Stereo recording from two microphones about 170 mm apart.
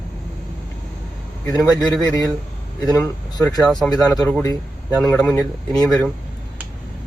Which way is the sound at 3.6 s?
Centre (ahead or behind).